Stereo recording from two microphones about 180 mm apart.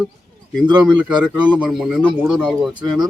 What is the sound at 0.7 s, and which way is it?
Speech, 25° right (ahead or behind).